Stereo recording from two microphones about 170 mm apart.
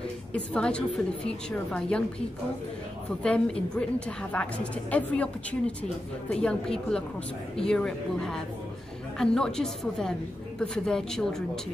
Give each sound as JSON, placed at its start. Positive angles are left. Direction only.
{"t": 0.3, "sound": "a woman's voice", "side_deg": 5}
{"t": 3.3, "sound": "a woman's voice", "side_deg": 5}